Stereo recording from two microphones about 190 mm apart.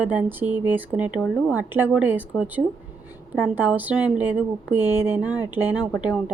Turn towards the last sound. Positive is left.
turn(degrees=-5)  # may be behind; listen again after turning